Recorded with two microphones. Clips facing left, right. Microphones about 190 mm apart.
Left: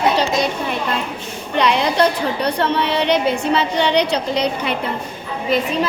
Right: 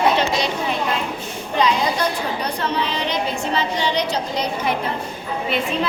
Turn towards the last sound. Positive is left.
turn(degrees=40)  # may be behind; listen again after turning